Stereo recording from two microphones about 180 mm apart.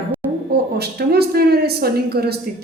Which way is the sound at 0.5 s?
60° right (ahead or behind).